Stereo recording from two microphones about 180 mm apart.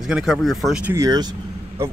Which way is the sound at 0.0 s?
Centre (ahead or behind).